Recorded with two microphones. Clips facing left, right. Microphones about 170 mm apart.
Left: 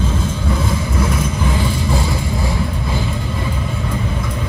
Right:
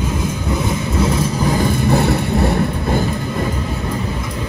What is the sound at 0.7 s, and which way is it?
Vehicle, 25° right (ahead or behind).